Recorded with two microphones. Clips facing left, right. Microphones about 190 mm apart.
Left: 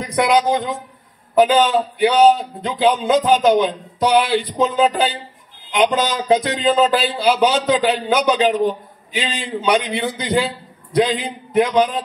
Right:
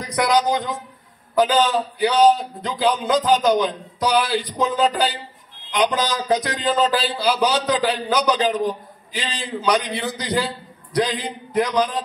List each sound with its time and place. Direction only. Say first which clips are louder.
0.0 s music: left 3 dB; 25° left (ahead or behind)